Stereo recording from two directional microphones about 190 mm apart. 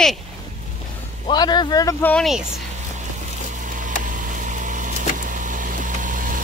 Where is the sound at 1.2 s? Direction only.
20° left (ahead or behind).